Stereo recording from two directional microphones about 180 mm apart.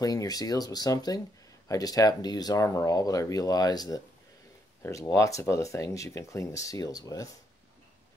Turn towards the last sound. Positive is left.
turn(degrees=20)  # may be behind; listen again after turning